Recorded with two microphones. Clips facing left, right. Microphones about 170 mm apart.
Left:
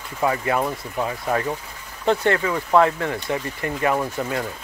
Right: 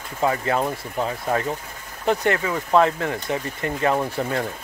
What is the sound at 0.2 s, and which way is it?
Speech, 25° right (ahead or behind).